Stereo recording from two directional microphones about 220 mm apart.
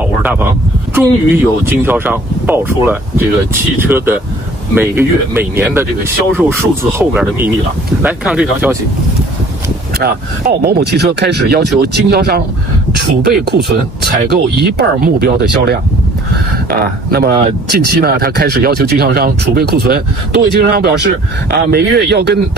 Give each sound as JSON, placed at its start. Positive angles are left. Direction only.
{"t": 0.2, "sound": "speech", "side_deg": -10}
{"t": 7.0, "sound": "speech", "side_deg": -10}
{"t": 9.9, "sound": "speech", "side_deg": -45}